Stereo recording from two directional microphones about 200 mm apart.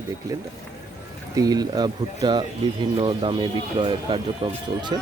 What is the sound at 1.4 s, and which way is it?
Speech, 20° right (ahead or behind).